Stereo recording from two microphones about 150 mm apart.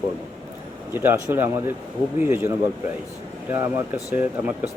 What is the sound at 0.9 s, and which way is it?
Speech, 15° right (ahead or behind).